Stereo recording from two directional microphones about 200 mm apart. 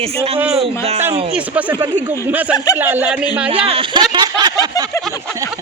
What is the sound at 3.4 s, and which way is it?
Speech, 30° right (ahead or behind).